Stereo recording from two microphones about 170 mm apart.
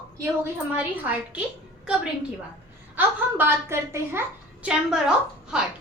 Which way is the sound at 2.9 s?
10° right (ahead or behind).